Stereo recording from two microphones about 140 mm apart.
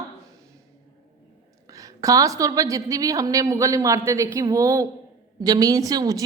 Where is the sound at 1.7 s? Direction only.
25° right (ahead or behind).